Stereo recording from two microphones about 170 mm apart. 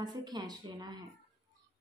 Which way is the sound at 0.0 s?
25° right (ahead or behind).